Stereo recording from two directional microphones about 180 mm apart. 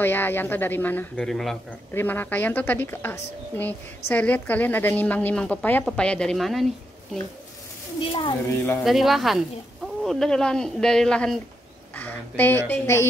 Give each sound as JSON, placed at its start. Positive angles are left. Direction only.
{"t": 0.0, "sound": "speech", "side_deg": 10}
{"t": 8.0, "sound": "speech", "side_deg": 30}
{"t": 8.8, "sound": "speech", "side_deg": 0}